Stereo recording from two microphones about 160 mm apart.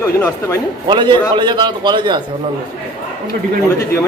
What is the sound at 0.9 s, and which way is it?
A man's voice, 30° right (ahead or behind).